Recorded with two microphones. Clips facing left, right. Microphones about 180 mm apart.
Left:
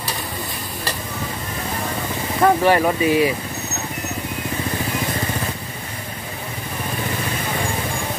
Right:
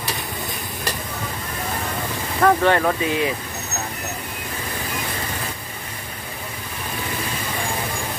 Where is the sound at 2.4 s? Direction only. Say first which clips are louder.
Left 1 dB; 10° left (ahead or behind).